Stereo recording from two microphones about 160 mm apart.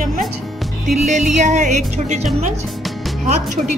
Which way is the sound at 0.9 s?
45° right (ahead or behind).